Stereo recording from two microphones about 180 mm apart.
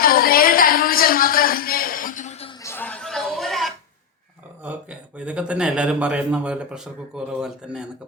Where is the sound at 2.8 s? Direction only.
Centre (ahead or behind).